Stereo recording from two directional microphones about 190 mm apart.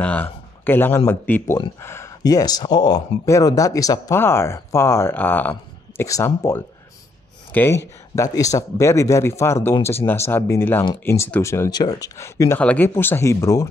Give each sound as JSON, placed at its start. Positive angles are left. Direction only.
{"t": 0.0, "sound": "a man's voice", "side_deg": 10}